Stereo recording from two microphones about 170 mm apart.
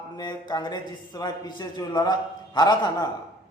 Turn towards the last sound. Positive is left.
turn(degrees=25)  # may be behind; listen again after turning